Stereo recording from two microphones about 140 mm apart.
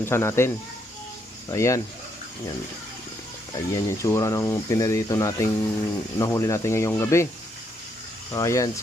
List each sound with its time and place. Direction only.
0.0 s speech: 20° left (ahead or behind)
3.5 s speech: 25° left (ahead or behind)
8.3 s speech: 25° left (ahead or behind)